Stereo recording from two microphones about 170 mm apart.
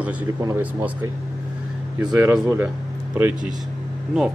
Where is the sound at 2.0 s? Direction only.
20° right (ahead or behind).